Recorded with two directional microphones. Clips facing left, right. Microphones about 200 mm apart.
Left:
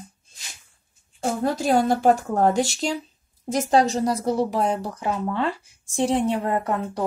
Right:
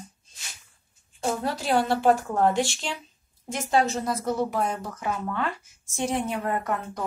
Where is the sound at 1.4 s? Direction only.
45° left (ahead or behind).